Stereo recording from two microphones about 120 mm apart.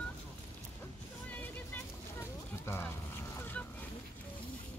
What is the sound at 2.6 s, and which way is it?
Speech, 20° left (ahead or behind).